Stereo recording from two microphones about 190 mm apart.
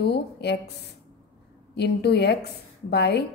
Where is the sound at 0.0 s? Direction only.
60° left (ahead or behind).